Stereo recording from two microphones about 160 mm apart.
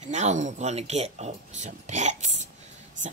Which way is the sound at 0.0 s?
45° right (ahead or behind).